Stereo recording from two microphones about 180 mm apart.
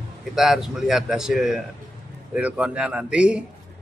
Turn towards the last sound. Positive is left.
turn(degrees=-5)  # may be behind; listen again after turning